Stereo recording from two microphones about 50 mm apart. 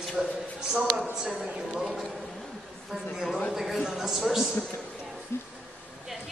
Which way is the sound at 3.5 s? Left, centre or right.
Centre.